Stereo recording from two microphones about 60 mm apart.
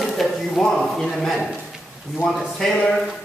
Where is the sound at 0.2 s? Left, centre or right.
Centre.